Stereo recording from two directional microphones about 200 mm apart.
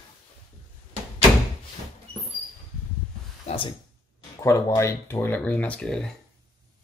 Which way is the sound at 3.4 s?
25° left (ahead or behind).